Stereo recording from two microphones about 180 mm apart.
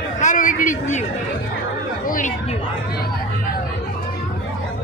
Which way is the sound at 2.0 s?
50° left (ahead or behind).